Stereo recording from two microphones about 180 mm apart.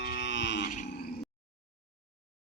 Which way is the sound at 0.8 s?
65° left (ahead or behind).